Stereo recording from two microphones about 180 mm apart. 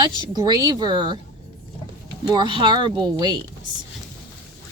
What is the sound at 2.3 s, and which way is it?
Speech, 25° right (ahead or behind).